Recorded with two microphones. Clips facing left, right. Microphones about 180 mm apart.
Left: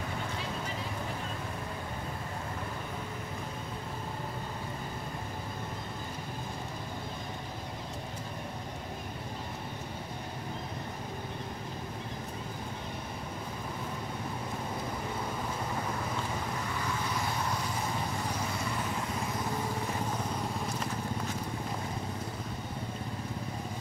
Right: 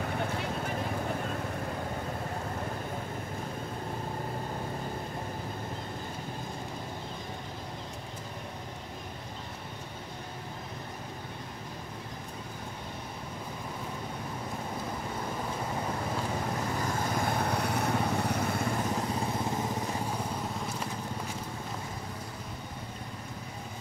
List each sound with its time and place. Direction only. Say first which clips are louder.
16.8 s vehicle: right 3 dB; 50° right (ahead or behind)